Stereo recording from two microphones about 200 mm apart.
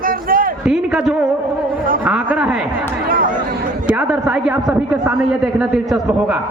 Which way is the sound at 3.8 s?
5° right (ahead or behind).